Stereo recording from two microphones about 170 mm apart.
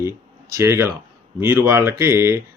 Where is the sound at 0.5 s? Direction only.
15° right (ahead or behind).